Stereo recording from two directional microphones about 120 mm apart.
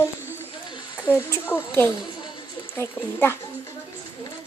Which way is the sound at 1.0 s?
15° left (ahead or behind).